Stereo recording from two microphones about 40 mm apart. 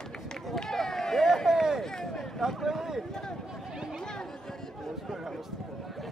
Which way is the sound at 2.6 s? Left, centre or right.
Centre.